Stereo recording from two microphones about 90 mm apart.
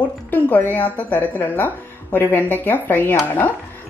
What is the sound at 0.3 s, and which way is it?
Speech, 20° left (ahead or behind).